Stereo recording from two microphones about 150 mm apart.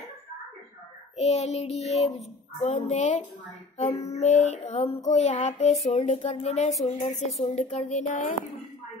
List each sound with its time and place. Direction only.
1.1 s child singing: 45° left (ahead or behind)